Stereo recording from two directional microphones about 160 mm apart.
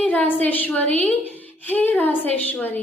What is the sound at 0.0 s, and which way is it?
A woman's voice, 10° left (ahead or behind).